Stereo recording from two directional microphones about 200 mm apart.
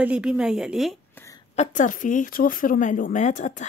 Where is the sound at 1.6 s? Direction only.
40° left (ahead or behind).